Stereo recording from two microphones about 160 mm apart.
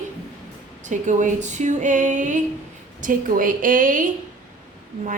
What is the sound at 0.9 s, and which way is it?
Speech, 50° right (ahead or behind).